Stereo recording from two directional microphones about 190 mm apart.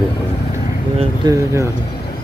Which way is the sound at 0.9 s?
20° right (ahead or behind).